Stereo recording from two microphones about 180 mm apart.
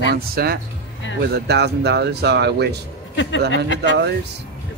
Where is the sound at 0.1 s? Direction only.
60° right (ahead or behind).